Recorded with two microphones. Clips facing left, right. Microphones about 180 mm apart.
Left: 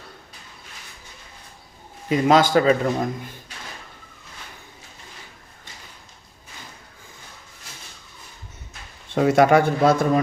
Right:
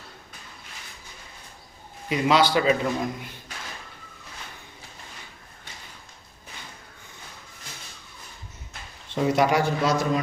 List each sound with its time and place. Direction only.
2.0 s a man's voice: 45° left (ahead or behind)
9.1 s a man's voice: 60° left (ahead or behind)